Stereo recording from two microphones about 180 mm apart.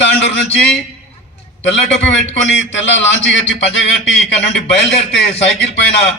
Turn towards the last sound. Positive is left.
turn(degrees=75)  # may be behind; listen again after turning